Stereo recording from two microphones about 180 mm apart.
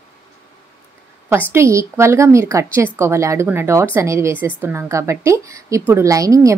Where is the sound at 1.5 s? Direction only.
15° right (ahead or behind).